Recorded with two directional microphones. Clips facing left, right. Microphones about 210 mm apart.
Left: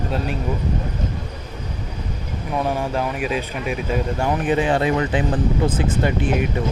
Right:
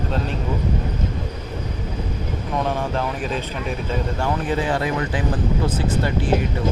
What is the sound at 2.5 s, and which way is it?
Speech, 10° left (ahead or behind).